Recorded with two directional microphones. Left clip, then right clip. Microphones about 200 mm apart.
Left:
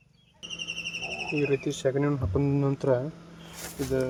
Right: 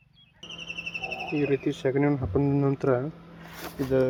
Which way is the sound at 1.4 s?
Centre (ahead or behind).